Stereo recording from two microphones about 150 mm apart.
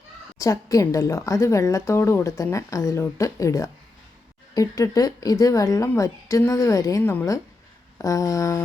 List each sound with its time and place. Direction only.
0.3 s a woman's voice: 20° left (ahead or behind)